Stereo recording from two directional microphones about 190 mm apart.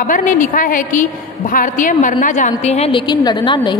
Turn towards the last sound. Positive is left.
turn(degrees=25)  # may be behind; listen again after turning